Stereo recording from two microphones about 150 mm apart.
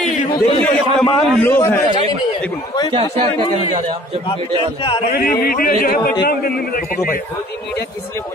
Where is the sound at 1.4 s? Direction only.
15° left (ahead or behind).